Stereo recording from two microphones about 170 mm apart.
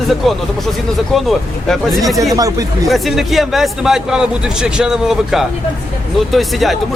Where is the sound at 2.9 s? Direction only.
Centre (ahead or behind).